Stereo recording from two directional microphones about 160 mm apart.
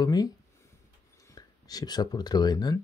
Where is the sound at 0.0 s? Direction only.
25° left (ahead or behind).